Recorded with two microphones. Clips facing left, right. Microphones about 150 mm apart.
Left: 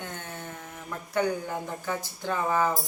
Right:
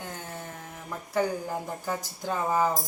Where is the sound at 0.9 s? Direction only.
5° right (ahead or behind).